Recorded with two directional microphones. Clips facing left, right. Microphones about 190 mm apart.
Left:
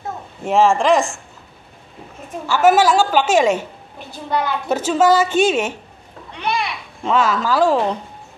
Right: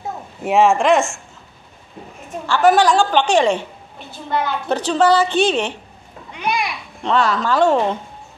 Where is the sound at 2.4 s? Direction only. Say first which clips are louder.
Even; 5° left (ahead or behind).